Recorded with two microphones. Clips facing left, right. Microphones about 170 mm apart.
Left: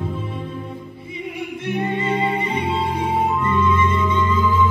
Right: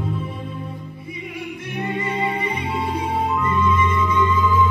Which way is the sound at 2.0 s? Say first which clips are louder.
Even; 25° left (ahead or behind).